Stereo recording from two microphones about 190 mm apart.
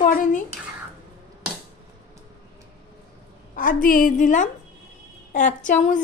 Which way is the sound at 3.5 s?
45° left (ahead or behind).